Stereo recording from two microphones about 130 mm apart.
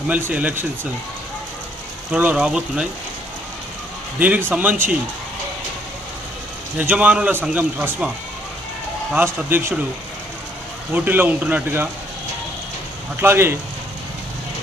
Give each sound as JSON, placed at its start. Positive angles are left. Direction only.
{"t": 0.1, "sound": "a man's voice", "side_deg": -15}
{"t": 2.1, "sound": "speech", "side_deg": -10}
{"t": 4.2, "sound": "a man's voice", "side_deg": -15}
{"t": 6.7, "sound": "a man's voice", "side_deg": -10}
{"t": 9.1, "sound": "a man's voice", "side_deg": -15}
{"t": 10.9, "sound": "a man's voice", "side_deg": -15}
{"t": 13.2, "sound": "speech", "side_deg": -20}